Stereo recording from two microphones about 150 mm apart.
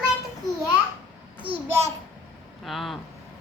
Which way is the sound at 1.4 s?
35° right (ahead or behind).